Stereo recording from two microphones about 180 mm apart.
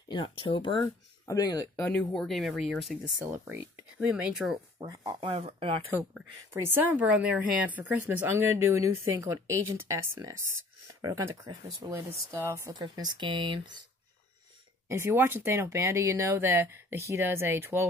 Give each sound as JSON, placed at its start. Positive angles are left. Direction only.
{"t": 0.1, "sound": "speech", "side_deg": 25}
{"t": 1.8, "sound": "speech", "side_deg": 10}
{"t": 3.2, "sound": "a woman's voice", "side_deg": -10}
{"t": 4.7, "sound": "speech", "side_deg": -20}
{"t": 5.3, "sound": "speech", "side_deg": -30}
{"t": 6.5, "sound": "a woman's voice", "side_deg": -10}
{"t": 10.9, "sound": "a woman's voice", "side_deg": -20}
{"t": 14.9, "sound": "a woman's voice", "side_deg": -15}